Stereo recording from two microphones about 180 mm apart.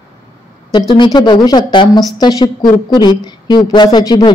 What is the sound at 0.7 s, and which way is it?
A woman's voice, 25° left (ahead or behind).